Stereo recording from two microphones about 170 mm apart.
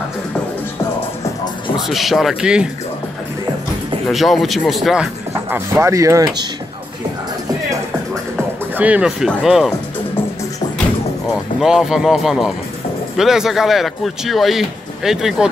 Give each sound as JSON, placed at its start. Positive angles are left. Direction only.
{"t": 1.9, "sound": "speech", "side_deg": 0}
{"t": 4.1, "sound": "speech", "side_deg": 0}
{"t": 5.8, "sound": "speech", "side_deg": -15}
{"t": 8.7, "sound": "speech", "side_deg": -10}
{"t": 11.6, "sound": "speech", "side_deg": 0}